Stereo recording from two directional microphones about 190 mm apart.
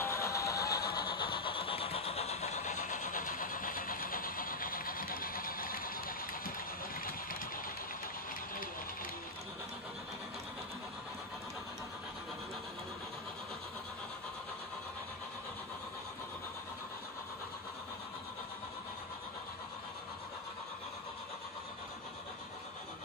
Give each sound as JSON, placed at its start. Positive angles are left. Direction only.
{"t": 0.0, "sound": "vehicle", "side_deg": 15}